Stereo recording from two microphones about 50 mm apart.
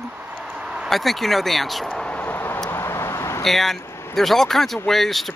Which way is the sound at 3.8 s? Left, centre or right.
Left.